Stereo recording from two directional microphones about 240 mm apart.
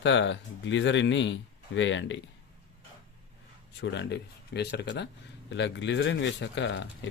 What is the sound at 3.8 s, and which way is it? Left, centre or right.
Speech, left.